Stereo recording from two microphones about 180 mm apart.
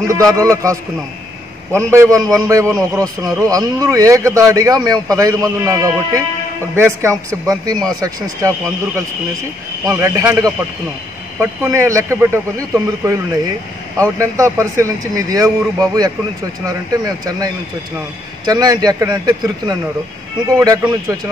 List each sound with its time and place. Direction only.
0.4 s a man's voice: 20° right (ahead or behind)
14.1 s a man's voice: 15° right (ahead or behind)